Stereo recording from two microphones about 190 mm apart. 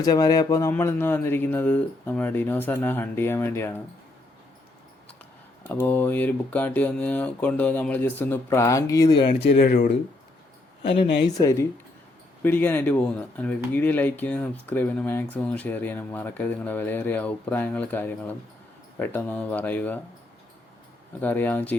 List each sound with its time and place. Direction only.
0.0 s speech: 20° left (ahead or behind)
5.8 s speech: 10° left (ahead or behind)
9.6 s speech: 45° left (ahead or behind)
10.8 s speech: 30° left (ahead or behind)
11.3 s speech: 15° left (ahead or behind)
21.2 s speech: 10° left (ahead or behind)